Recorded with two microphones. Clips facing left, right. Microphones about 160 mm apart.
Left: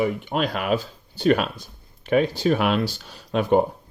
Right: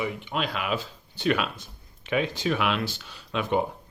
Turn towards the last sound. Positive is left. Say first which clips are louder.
# left 7 dB
turn(degrees=45)  # may be behind; listen again after turning